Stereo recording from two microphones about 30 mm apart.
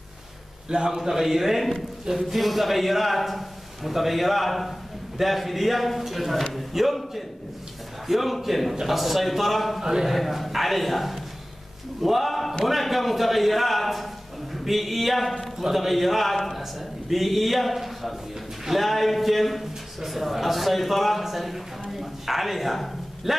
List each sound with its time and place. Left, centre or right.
0.8 s a man's voice: centre
9.8 s a sound: centre
10.0 s a man's voice: centre